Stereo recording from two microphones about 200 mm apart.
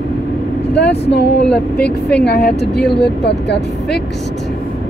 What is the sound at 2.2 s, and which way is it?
Speech, 55° left (ahead or behind).